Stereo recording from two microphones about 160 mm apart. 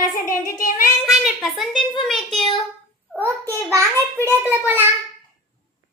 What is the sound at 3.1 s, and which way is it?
Speech, 15° right (ahead or behind).